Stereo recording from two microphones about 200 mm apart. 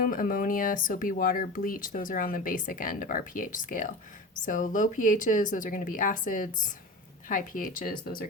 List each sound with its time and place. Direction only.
0.0 s speech: 45° left (ahead or behind)